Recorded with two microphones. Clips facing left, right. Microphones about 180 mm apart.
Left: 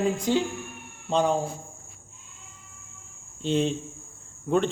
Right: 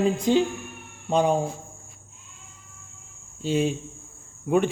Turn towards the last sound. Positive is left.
turn(degrees=-10)  # may be behind; listen again after turning